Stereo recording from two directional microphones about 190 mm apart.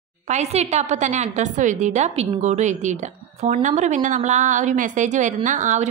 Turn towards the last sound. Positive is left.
turn(degrees=-40)  # may be behind; listen again after turning